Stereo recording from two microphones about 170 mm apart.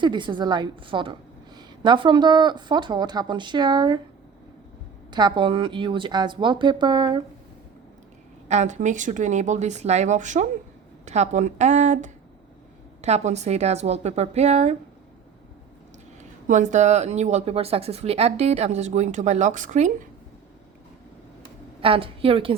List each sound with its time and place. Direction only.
0.0 s speech: 25° right (ahead or behind)
5.1 s speech: 25° right (ahead or behind)
8.4 s speech: 45° right (ahead or behind)
16.5 s speech: 45° right (ahead or behind)
21.8 s speech: 30° right (ahead or behind)